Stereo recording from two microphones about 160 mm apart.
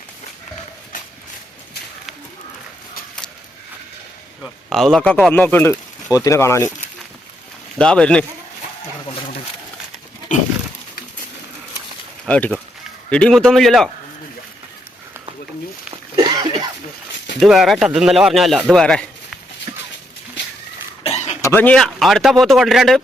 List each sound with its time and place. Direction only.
4.4 s speech: centre (ahead or behind); by 6.7 s 20° left (ahead or behind)
7.8 s speech: 5° left (ahead or behind)
12.2 s speech: 5° left (ahead or behind)
15.9 s a sound: 25° right (ahead or behind)
17.4 s speech: centre (ahead or behind)
21.0 s cough: 40° left (ahead or behind)
21.4 s speech: 10° left (ahead or behind)